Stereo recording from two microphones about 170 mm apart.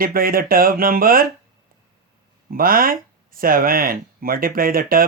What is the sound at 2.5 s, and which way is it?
Speech, 55° right (ahead or behind).